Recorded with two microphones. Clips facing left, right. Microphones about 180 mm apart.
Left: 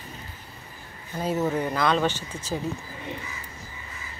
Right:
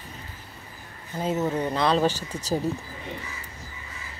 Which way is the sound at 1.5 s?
25° right (ahead or behind).